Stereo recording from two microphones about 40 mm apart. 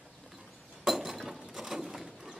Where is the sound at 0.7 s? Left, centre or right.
Centre.